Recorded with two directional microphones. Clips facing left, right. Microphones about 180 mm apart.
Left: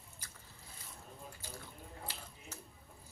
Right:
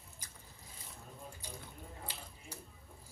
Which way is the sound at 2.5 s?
10° right (ahead or behind).